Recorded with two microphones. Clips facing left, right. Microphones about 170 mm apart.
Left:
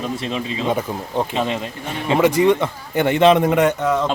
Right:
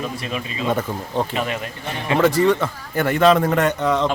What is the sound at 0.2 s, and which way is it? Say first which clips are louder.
A man's voice: left 3 dB; 25° left (ahead or behind).